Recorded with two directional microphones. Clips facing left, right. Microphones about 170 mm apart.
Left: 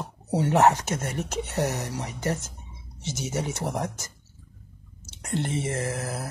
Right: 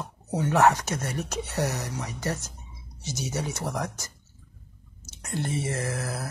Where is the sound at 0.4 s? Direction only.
20° left (ahead or behind).